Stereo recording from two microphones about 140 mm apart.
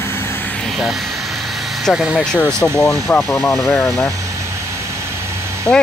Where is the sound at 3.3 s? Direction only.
15° left (ahead or behind).